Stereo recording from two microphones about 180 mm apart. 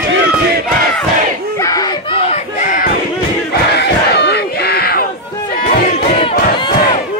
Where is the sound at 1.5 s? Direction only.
20° left (ahead or behind); by 2.9 s 50° left (ahead or behind).